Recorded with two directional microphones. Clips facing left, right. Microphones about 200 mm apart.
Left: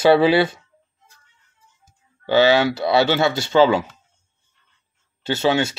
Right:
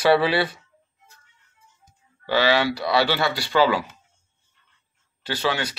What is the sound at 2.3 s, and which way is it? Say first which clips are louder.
Speech: left 5 dB; 25° left (ahead or behind).